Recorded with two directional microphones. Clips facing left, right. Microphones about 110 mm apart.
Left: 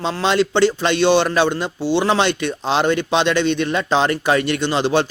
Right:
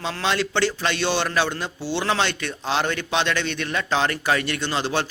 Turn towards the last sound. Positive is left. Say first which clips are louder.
# left 7 dB
turn(degrees=20)  # may be behind; listen again after turning